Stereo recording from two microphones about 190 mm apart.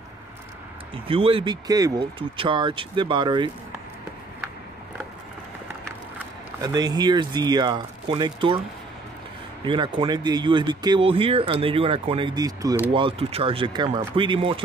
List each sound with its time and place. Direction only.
1.0 s speech: 30° right (ahead or behind)
5.9 s speech: 15° right (ahead or behind)
9.7 s speech: 25° right (ahead or behind)
12.9 s speech: 30° right (ahead or behind)